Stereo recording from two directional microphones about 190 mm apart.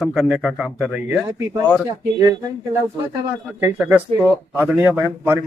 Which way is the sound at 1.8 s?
20° right (ahead or behind).